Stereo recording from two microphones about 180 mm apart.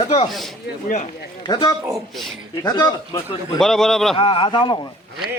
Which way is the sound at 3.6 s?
Centre (ahead or behind).